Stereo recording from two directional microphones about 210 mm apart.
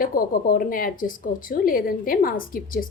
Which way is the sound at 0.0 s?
45° left (ahead or behind).